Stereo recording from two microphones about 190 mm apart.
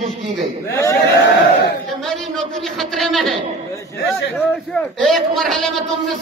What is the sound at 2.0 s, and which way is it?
A man's voice, centre (ahead or behind).